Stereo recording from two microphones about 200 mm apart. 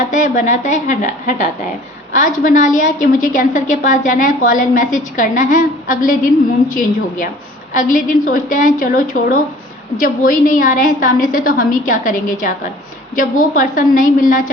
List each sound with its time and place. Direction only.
0.1 s a woman's voice: 40° left (ahead or behind)